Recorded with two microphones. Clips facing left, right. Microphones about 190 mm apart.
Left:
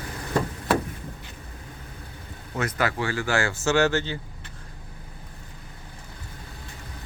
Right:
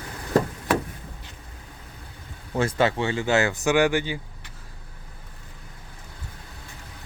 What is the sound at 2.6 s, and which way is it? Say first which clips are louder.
Speech: right 4 dB; 25° right (ahead or behind).